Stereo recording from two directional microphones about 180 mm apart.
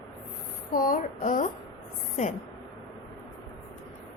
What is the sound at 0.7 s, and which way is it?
Speech, 50° left (ahead or behind).